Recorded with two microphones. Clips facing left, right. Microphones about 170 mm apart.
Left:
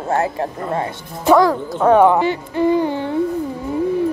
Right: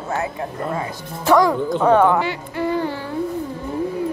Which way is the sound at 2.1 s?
20° left (ahead or behind).